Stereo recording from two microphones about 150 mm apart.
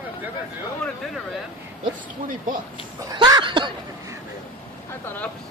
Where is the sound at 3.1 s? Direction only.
25° right (ahead or behind).